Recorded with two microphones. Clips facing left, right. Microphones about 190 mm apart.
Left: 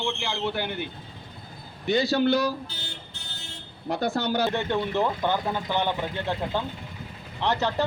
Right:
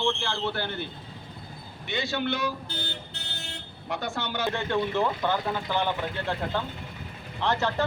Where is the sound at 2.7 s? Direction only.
60° right (ahead or behind).